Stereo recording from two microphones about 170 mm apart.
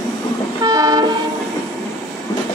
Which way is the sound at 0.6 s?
20° right (ahead or behind).